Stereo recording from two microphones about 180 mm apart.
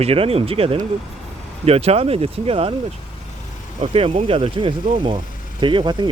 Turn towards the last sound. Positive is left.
turn(degrees=-25)  # may be behind; listen again after turning